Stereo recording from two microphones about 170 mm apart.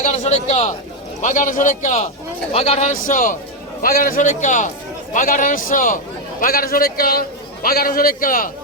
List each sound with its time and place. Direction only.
0.0 s a man's voice: 45° left (ahead or behind)
1.2 s a man's voice: 50° left (ahead or behind)
2.5 s a man's voice: 35° left (ahead or behind); by 8.4 s 55° left (ahead or behind)